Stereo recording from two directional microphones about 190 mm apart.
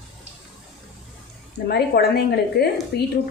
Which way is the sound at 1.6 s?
60° left (ahead or behind).